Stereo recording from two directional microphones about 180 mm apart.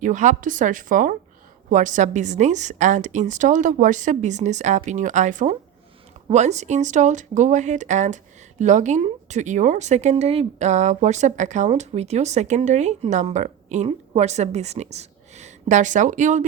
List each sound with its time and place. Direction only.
0.0 s a woman's voice: 45° right (ahead or behind)